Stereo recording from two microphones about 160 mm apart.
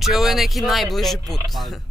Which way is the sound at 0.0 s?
Centre (ahead or behind).